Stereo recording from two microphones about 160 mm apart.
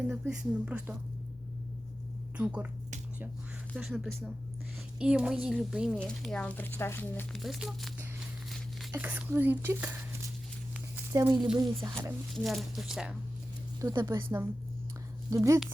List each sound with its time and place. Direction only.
0.1 s speech: 5° right (ahead or behind)
2.4 s speech: 10° right (ahead or behind)
3.8 s a woman's voice: 5° right (ahead or behind); by 7.3 s 15° left (ahead or behind)
7.3 s a woman's voice: centre (ahead or behind)
8.4 s a sound: centre (ahead or behind)
8.9 s speech: 10° right (ahead or behind)
11.1 s speech: 20° right (ahead or behind)
12.3 s a woman's voice: centre (ahead or behind)
13.8 s speech: 25° right (ahead or behind)